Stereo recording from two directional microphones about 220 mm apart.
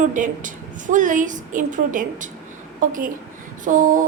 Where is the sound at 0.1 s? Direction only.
35° right (ahead or behind).